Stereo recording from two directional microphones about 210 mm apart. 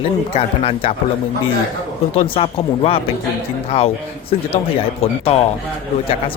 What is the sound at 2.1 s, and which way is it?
Speech, 30° left (ahead or behind).